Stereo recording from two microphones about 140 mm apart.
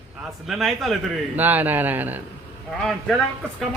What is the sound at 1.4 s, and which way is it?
Speech, 15° right (ahead or behind).